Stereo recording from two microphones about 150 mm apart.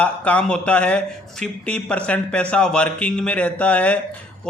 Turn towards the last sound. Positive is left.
turn(degrees=10)  # may be behind; listen again after turning